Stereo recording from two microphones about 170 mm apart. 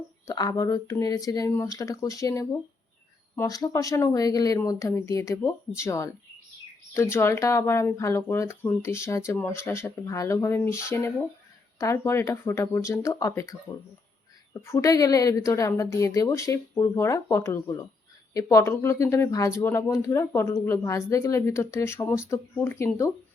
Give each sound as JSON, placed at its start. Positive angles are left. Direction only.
{"t": 0.3, "sound": "speech", "side_deg": 20}